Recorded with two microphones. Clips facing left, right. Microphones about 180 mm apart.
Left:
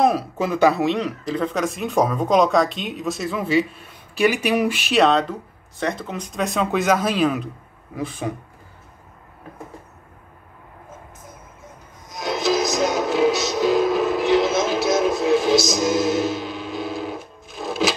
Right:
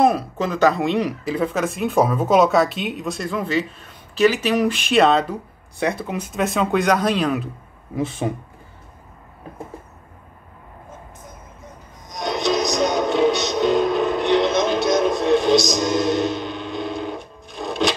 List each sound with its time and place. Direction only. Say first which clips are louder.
0.0 s speech: right 1 dB; 5° left (ahead or behind)
0.9 s speech: right 3 dB; 10° right (ahead or behind)
7.9 s speech: right 4 dB; 25° right (ahead or behind)
12.1 s music: even; centre (ahead or behind)